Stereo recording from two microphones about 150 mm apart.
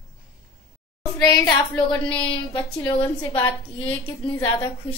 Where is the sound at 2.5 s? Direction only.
30° left (ahead or behind).